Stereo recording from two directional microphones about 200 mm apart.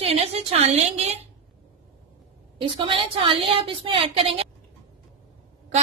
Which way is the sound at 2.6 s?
25° right (ahead or behind).